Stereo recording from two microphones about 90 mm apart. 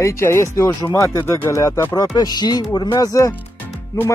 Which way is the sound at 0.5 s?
45° left (ahead or behind).